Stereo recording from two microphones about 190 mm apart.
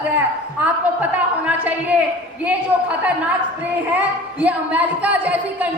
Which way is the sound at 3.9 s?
10° right (ahead or behind).